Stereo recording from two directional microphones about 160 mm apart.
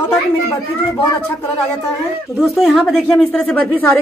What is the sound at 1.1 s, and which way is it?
Speech, 10° left (ahead or behind).